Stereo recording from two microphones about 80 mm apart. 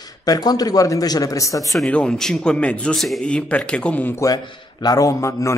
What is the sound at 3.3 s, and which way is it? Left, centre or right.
Speech, centre.